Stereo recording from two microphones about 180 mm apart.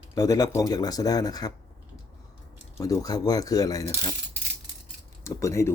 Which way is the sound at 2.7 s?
20° left (ahead or behind).